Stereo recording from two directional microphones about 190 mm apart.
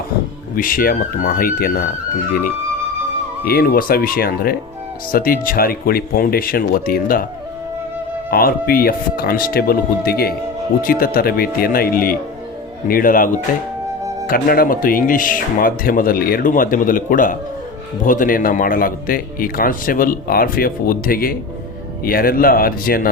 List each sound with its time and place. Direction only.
0.5 s a man's voice: 50° left (ahead or behind)
3.4 s a man's voice: 50° left (ahead or behind)
8.3 s a man's voice: 50° left (ahead or behind)